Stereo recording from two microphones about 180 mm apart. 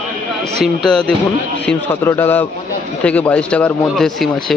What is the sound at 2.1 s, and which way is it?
Speech, 10° left (ahead or behind).